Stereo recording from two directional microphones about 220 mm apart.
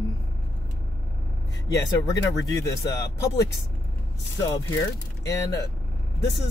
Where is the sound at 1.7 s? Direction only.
15° left (ahead or behind).